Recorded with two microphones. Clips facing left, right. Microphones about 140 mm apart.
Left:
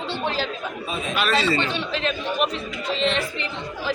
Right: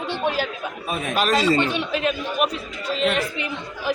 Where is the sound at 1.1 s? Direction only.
40° right (ahead or behind).